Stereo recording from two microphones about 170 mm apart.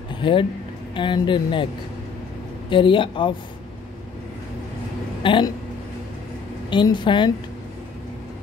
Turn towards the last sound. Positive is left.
turn(degrees=25)  # may be behind; listen again after turning